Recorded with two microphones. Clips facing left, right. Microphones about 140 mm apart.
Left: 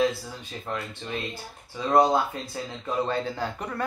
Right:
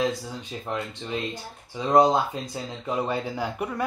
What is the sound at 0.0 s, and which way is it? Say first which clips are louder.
Speech: left 1 dB; 15° right (ahead or behind).